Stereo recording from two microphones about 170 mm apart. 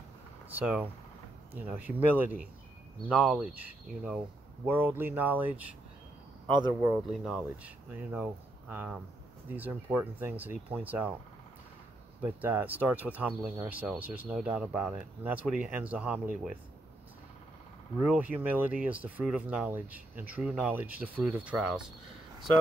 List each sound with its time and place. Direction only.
0.5 s speech: 10° right (ahead or behind)
6.5 s speech: 25° right (ahead or behind)
7.1 s speech: centre (ahead or behind)
12.2 s speech: 10° right (ahead or behind)
18.3 s speech: 10° right (ahead or behind)